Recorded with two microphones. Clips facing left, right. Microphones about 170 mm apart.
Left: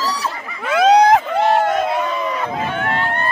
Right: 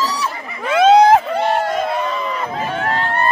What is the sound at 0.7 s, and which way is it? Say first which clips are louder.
Vehicle: right 2 dB; centre (ahead or behind).